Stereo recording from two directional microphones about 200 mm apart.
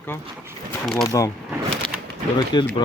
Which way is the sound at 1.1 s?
15° left (ahead or behind).